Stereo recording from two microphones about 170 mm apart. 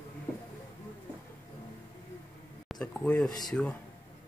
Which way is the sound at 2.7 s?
5° left (ahead or behind).